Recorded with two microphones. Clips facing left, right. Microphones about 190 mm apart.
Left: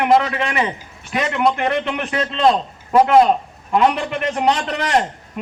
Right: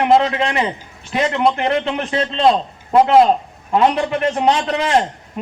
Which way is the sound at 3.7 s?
30° right (ahead or behind).